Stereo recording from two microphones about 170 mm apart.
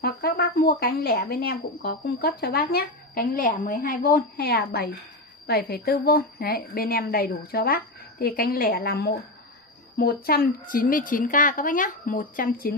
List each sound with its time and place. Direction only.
0.0 s a woman's voice: 65° left (ahead or behind)